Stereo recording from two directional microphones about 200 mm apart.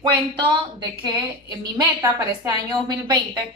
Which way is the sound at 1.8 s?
20° right (ahead or behind).